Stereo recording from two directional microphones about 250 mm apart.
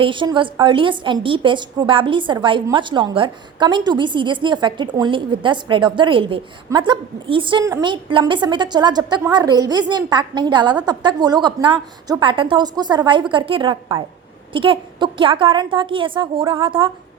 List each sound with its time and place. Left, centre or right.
0.0 s a woman's voice: centre